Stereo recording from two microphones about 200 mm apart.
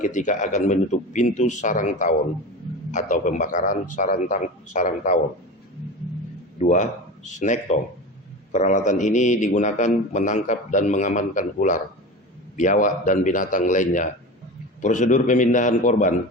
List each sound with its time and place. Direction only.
0.0 s a man's voice: 40° left (ahead or behind)
6.6 s a man's voice: 35° left (ahead or behind)